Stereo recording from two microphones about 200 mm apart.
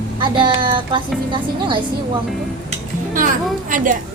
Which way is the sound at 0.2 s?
25° right (ahead or behind).